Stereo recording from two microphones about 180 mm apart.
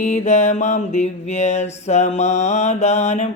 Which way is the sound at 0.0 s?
40° left (ahead or behind).